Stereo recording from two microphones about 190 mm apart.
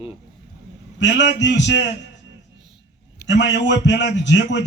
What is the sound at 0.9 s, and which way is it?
Speech, 70° left (ahead or behind).